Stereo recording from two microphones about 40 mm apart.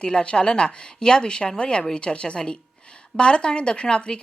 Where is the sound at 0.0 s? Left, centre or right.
Left.